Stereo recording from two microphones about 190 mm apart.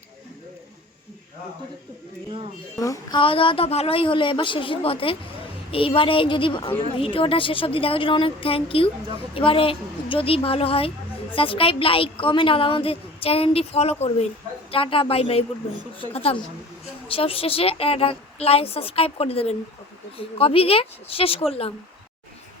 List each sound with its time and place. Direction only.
2.7 s a woman's voice: 20° left (ahead or behind)